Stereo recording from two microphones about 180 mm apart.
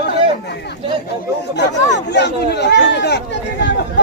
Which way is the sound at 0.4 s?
65° left (ahead or behind).